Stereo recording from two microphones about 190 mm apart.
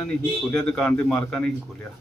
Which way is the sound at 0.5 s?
5° left (ahead or behind).